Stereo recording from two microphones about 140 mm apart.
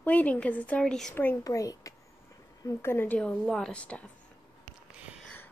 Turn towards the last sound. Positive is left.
turn(degrees=10)  # may be behind; listen again after turning